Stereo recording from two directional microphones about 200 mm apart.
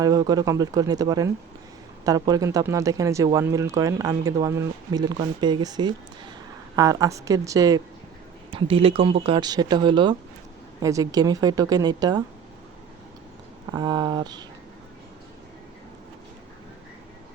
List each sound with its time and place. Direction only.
0.0 s speech: 20° right (ahead or behind)
13.7 s speech: 20° right (ahead or behind)